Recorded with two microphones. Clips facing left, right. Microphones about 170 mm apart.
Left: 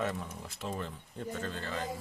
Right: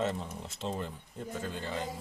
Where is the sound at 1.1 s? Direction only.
5° right (ahead or behind).